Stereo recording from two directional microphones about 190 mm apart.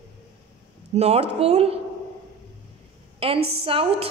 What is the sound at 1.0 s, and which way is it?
Speech, 30° right (ahead or behind).